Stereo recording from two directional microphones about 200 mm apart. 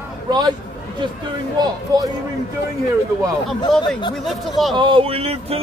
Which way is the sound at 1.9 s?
20° right (ahead or behind).